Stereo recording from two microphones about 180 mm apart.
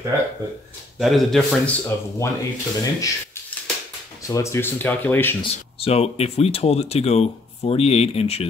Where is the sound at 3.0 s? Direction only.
15° left (ahead or behind).